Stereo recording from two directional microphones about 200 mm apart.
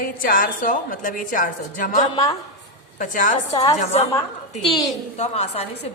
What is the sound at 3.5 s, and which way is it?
Speech, 20° left (ahead or behind).